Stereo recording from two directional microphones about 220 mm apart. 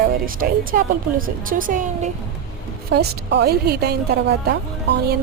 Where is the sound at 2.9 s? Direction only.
50° right (ahead or behind).